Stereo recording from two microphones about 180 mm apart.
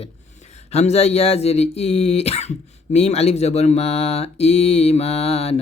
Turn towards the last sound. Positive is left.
turn(degrees=35)  # may be behind; listen again after turning